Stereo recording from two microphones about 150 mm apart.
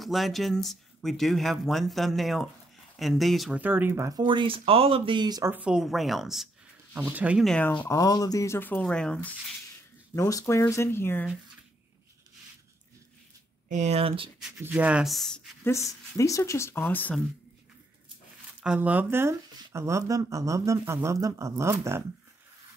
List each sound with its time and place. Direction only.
0.0 s speech: centre (ahead or behind); by 4.2 s 20° right (ahead or behind)
4.2 s speech: 30° right (ahead or behind)
5.5 s speech: 10° right (ahead or behind)
7.4 s speech: 10° left (ahead or behind)
10.1 s speech: 20° left (ahead or behind)
13.7 s speech: 50° right (ahead or behind)
14.6 s speech: 10° right (ahead or behind)
15.6 s speech: 20° left (ahead or behind)
16.8 s speech: 5° left (ahead or behind)
18.6 s speech: 10° right (ahead or behind)